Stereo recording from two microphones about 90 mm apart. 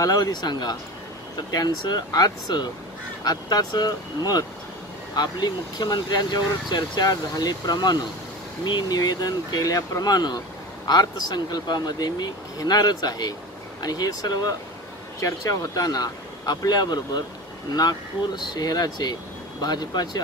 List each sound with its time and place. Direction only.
0.0 s speech: 45° left (ahead or behind)